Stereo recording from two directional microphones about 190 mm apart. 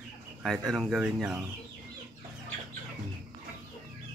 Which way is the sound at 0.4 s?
Centre (ahead or behind).